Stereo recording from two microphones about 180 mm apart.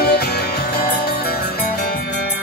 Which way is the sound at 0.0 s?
60° left (ahead or behind).